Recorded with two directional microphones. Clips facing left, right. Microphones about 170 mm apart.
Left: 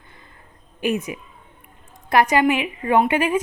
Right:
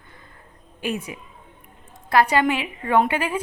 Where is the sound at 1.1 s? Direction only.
20° left (ahead or behind).